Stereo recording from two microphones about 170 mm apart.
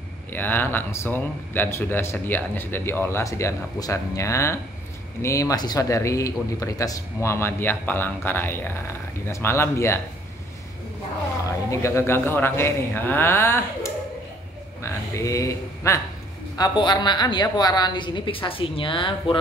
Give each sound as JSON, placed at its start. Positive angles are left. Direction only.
{"t": 0.3, "sound": "speech", "side_deg": 10}
{"t": 11.7, "sound": "a woman's voice", "side_deg": 15}